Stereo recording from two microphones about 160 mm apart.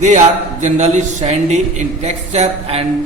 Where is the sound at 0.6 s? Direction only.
45° right (ahead or behind).